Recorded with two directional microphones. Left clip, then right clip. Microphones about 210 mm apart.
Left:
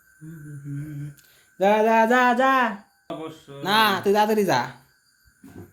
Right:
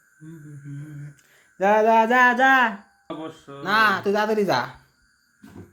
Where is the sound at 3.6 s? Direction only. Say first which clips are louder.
Even; 15° left (ahead or behind).